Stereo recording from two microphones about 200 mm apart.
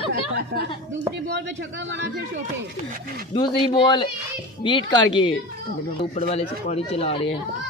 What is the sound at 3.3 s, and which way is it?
Speech, 25° left (ahead or behind).